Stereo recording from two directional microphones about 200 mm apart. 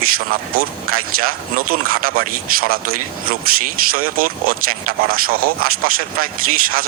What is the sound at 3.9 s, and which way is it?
Speech, 45° right (ahead or behind).